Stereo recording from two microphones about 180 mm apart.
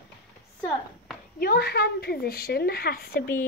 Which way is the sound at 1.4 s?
60° left (ahead or behind).